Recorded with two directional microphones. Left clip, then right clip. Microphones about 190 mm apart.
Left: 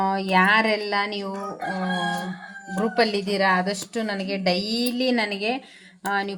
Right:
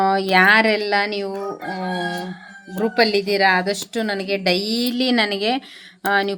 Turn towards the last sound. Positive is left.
turn(degrees=-45)  # may be behind; listen again after turning